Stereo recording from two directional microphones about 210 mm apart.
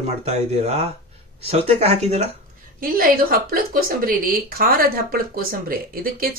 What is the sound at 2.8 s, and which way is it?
A woman's voice, 45° right (ahead or behind).